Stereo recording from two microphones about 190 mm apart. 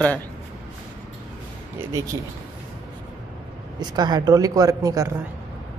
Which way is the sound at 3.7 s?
20° right (ahead or behind).